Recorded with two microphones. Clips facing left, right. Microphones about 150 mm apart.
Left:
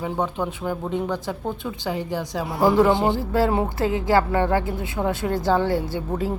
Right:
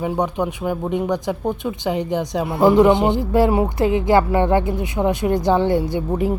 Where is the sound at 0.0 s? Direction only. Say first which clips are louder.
Right 4 dB; 15° right (ahead or behind).